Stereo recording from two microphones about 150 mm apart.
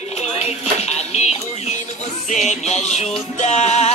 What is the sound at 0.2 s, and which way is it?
Dishes, 45° left (ahead or behind).